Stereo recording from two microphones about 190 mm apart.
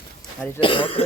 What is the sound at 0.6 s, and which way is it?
Speech, 25° left (ahead or behind).